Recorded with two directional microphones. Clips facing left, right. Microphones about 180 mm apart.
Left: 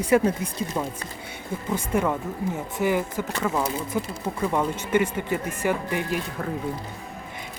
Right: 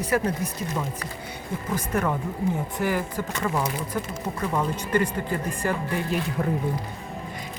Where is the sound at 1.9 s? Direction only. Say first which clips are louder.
Left 2 dB; 10° left (ahead or behind).